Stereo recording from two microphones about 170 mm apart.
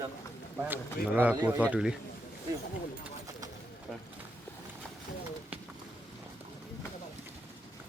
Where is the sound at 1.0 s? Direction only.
65° left (ahead or behind).